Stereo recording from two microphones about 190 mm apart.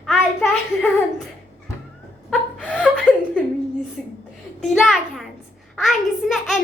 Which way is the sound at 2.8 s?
5° left (ahead or behind).